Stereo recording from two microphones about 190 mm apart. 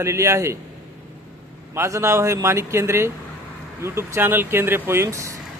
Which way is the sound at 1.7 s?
15° right (ahead or behind).